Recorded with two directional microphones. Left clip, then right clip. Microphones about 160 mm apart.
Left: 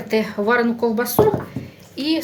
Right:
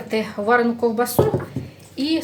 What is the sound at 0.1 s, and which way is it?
Speech, 40° left (ahead or behind).